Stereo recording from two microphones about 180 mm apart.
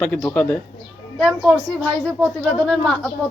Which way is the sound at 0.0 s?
10° left (ahead or behind).